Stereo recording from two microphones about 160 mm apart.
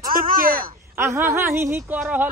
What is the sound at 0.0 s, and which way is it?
Speech, 60° right (ahead or behind).